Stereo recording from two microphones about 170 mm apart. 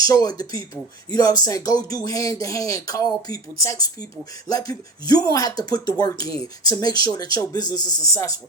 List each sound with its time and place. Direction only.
0.1 s speech: 20° left (ahead or behind)